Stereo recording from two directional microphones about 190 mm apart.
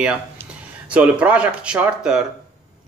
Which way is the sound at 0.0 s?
5° right (ahead or behind).